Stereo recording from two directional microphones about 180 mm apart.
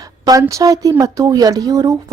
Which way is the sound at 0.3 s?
20° right (ahead or behind).